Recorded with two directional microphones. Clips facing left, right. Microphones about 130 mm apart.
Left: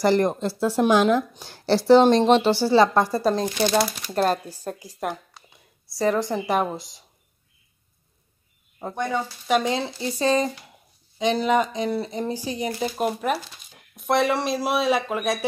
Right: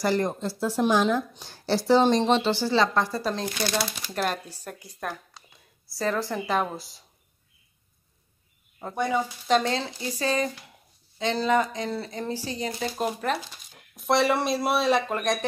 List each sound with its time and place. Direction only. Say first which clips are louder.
0.0 s speech: left 5 dB; 65° left (ahead or behind)
2.6 s speech: left 5 dB; 40° left (ahead or behind)
5.0 s speech: left 5 dB; 25° left (ahead or behind)
8.9 s speech: right 1 dB; 10° right (ahead or behind)
9.5 s speech: left 2 dB; 15° left (ahead or behind)
10.1 s speech: left 5 dB; 30° left (ahead or behind)
11.1 s speech: left 3 dB; 15° left (ahead or behind)